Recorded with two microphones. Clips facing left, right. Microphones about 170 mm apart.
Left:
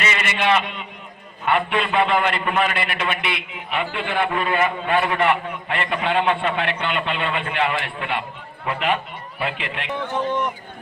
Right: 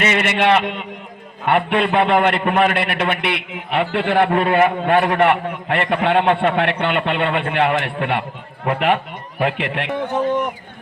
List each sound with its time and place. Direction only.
0.0 s a man's voice: 60° right (ahead or behind)